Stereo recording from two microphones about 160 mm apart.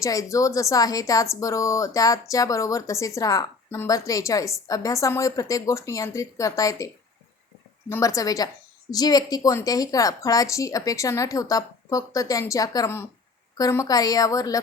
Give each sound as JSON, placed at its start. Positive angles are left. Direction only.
{"t": 0.0, "sound": "a woman's voice", "side_deg": 20}